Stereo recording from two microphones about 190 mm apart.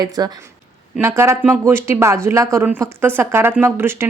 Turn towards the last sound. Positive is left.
turn(degrees=-10)  # may be behind; listen again after turning